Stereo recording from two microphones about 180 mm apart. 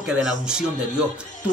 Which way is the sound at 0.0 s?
5° right (ahead or behind).